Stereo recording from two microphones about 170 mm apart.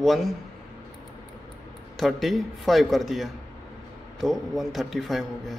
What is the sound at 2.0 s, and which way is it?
Speech, centre (ahead or behind).